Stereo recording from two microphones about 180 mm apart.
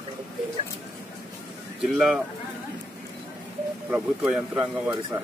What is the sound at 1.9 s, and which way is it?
Speech, centre (ahead or behind).